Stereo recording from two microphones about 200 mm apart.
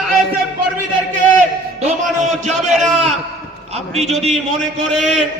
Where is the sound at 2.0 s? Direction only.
35° right (ahead or behind).